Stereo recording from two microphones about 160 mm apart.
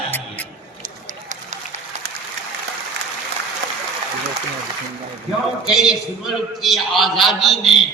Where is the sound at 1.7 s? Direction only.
45° right (ahead or behind).